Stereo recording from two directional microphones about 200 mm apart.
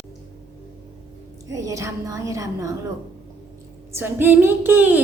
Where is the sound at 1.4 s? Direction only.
15° right (ahead or behind).